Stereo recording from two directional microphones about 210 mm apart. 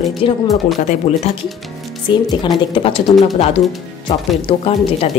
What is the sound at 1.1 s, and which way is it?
Speech, 30° left (ahead or behind).